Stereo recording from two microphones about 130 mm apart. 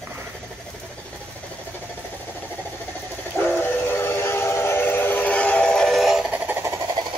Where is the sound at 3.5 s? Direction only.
15° left (ahead or behind); by 7.1 s 30° right (ahead or behind).